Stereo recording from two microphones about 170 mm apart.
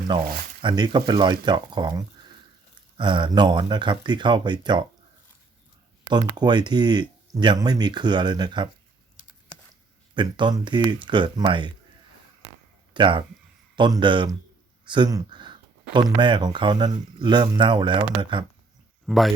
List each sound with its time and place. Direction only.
0.1 s speech: 25° right (ahead or behind)
6.1 s speech: 25° right (ahead or behind)
10.2 s speech: 25° right (ahead or behind)
12.9 s speech: 30° right (ahead or behind)
19.0 s speech: centre (ahead or behind)